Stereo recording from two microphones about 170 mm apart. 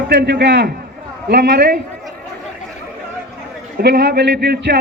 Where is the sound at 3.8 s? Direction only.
70° right (ahead or behind).